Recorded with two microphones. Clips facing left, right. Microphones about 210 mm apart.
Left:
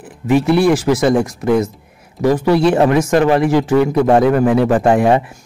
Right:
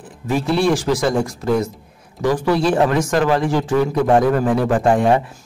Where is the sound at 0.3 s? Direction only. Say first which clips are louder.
Left 5 dB; 65° left (ahead or behind).